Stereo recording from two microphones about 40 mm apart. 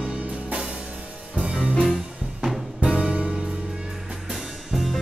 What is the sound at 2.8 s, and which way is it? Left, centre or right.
Music, right.